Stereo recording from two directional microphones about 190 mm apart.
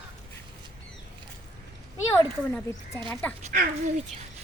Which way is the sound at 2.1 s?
15° left (ahead or behind).